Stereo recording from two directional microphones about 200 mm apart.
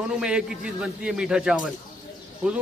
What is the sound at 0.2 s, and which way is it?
A man's voice, 5° right (ahead or behind).